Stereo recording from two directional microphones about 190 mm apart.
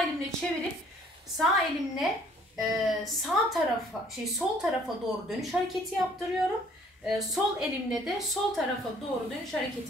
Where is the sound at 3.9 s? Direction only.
15° left (ahead or behind).